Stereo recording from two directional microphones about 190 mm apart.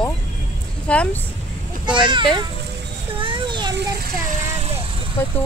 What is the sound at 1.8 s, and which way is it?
Speech, 25° right (ahead or behind).